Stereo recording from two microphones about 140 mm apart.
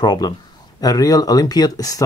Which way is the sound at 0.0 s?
30° left (ahead or behind).